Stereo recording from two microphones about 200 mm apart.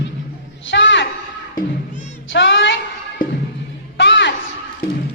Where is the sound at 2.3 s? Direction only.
65° left (ahead or behind).